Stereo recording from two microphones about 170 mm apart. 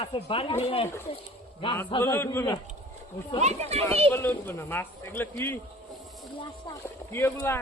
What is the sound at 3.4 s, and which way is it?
Speech, 40° right (ahead or behind).